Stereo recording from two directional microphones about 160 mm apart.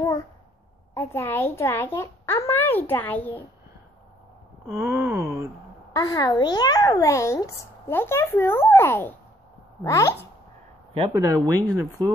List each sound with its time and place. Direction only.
0.9 s a child's voice: 15° left (ahead or behind)
4.7 s wail: 15° right (ahead or behind)
5.9 s a child's voice: 25° left (ahead or behind)
11.1 s speech: 20° right (ahead or behind)